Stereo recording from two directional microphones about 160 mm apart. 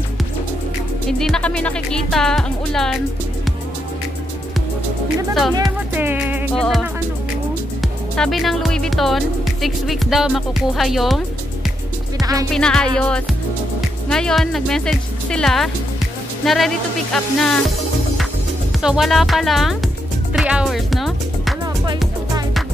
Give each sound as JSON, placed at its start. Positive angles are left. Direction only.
{"t": 1.1, "sound": "speech", "side_deg": 5}
{"t": 5.9, "sound": "music", "side_deg": -10}
{"t": 6.5, "sound": "speech", "side_deg": 0}
{"t": 7.8, "sound": "speech", "side_deg": 0}
{"t": 12.2, "sound": "music", "side_deg": -20}
{"t": 12.5, "sound": "speech", "side_deg": 5}
{"t": 18.8, "sound": "speech", "side_deg": -5}